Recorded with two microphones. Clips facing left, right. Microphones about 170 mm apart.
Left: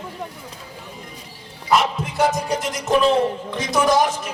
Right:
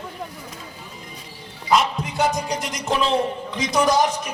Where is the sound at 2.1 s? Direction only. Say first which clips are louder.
Left 2 dB; centre (ahead or behind).